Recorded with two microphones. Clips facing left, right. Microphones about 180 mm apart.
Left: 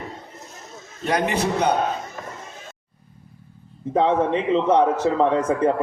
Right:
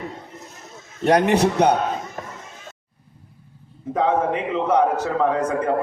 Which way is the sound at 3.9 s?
30° left (ahead or behind).